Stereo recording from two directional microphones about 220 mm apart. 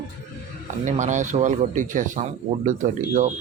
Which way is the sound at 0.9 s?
35° right (ahead or behind).